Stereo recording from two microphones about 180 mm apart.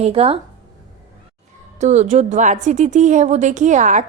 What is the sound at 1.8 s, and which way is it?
A woman's voice, 40° right (ahead or behind).